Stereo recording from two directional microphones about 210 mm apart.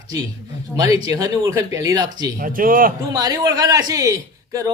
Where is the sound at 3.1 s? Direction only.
20° right (ahead or behind).